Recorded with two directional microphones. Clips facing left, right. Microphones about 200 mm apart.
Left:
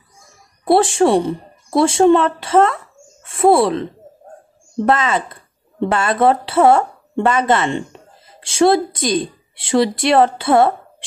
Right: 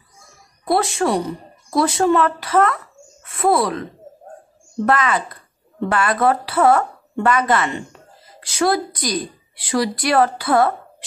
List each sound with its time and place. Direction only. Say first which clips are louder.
0.7 s a woman's voice: left 6 dB; 30° left (ahead or behind)
4.8 s speech: left 2 dB; 25° left (ahead or behind)